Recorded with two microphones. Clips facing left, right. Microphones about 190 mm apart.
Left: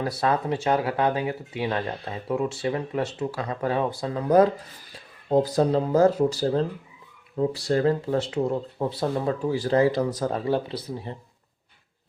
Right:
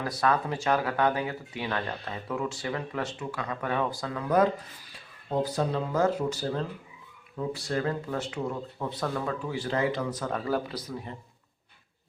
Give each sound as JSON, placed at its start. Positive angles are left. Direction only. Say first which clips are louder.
{"t": 0.0, "sound": "speech", "louder": "left 3 dB", "side_deg": 30}